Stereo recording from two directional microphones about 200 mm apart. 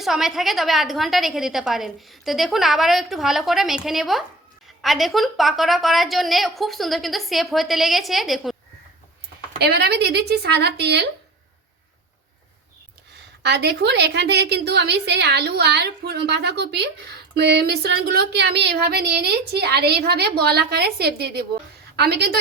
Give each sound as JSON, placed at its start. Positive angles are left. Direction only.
{"t": 0.0, "sound": "a woman's voice", "side_deg": 0}
{"t": 9.6, "sound": "a woman's voice", "side_deg": -55}
{"t": 13.1, "sound": "a woman's voice", "side_deg": -55}